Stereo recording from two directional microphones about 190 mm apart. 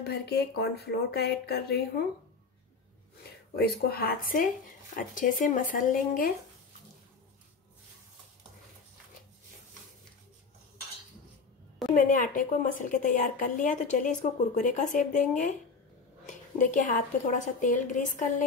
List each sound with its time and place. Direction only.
0.0 s speech: 60° left (ahead or behind)
3.5 s speech: 55° left (ahead or behind)
11.9 s a woman's voice: 45° left (ahead or behind)
16.3 s a woman's voice: 45° left (ahead or behind)